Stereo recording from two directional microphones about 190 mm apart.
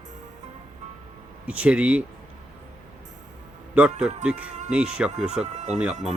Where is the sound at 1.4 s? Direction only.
5° right (ahead or behind).